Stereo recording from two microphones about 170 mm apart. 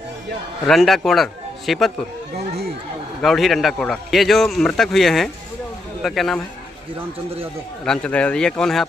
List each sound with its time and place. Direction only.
0.7 s a man's voice: centre (ahead or behind)
2.3 s speech: 70° right (ahead or behind)
3.2 s a man's voice: centre (ahead or behind)
7.8 s a man's voice: 5° left (ahead or behind)